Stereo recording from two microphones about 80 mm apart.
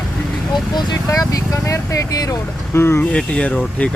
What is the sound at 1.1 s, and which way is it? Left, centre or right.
Speech, left.